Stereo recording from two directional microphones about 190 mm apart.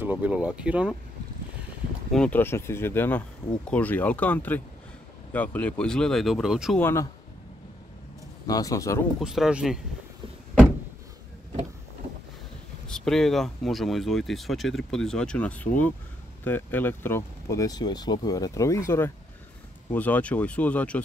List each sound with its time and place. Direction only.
0.0 s speech: 10° right (ahead or behind)
2.1 s speech: 10° left (ahead or behind)
6.8 s speech: 15° left (ahead or behind)
8.5 s speech: 20° left (ahead or behind)
9.2 s speech: 5° right (ahead or behind)
12.8 s speech: 5° left (ahead or behind)